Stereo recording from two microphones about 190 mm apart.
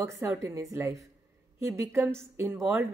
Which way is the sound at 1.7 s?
10° right (ahead or behind).